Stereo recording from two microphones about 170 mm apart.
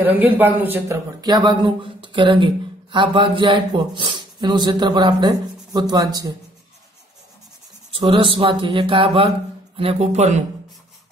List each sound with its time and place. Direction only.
0.0 s a man's voice: 10° right (ahead or behind)
1.2 s speech: 25° right (ahead or behind)
7.9 s speech: 30° right (ahead or behind)